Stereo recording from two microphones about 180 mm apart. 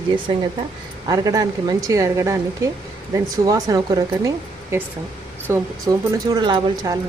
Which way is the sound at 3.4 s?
20° right (ahead or behind).